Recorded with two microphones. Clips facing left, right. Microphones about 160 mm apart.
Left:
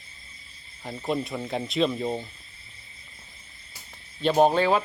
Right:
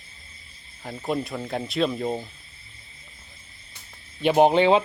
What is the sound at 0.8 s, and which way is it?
Speech, 5° right (ahead or behind).